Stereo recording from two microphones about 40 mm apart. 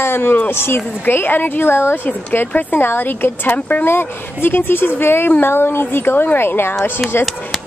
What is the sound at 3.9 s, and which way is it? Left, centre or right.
Speech, left.